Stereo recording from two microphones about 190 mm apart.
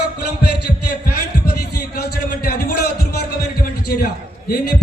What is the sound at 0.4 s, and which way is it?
Heart sounds, 60° left (ahead or behind).